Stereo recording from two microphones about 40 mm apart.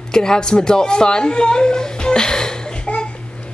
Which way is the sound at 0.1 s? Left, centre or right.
Centre.